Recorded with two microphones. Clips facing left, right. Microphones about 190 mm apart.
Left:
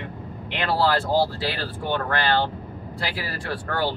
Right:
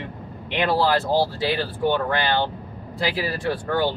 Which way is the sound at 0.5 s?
20° right (ahead or behind).